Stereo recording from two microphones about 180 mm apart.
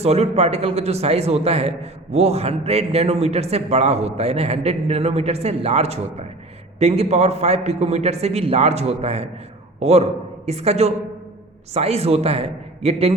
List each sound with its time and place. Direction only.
0.0 s a man's voice: 35° right (ahead or behind)